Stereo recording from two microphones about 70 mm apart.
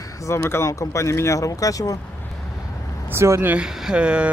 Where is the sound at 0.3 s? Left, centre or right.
Left.